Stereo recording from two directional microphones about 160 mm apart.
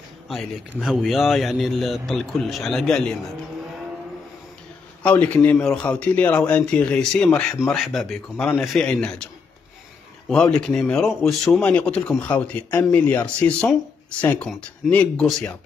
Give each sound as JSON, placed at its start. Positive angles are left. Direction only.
{"t": 0.3, "sound": "speech", "side_deg": 0}
{"t": 5.0, "sound": "speech", "side_deg": 10}